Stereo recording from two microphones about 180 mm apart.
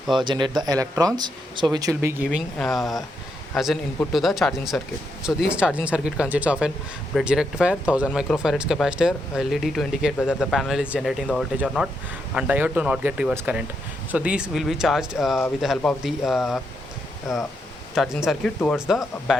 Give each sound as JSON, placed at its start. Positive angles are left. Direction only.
{"t": 0.1, "sound": "speech", "side_deg": -25}
{"t": 2.6, "sound": "speech", "side_deg": 0}
{"t": 17.9, "sound": "speech", "side_deg": 0}